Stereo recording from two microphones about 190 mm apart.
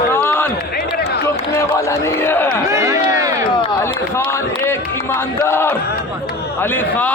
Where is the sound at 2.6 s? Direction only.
15° right (ahead or behind).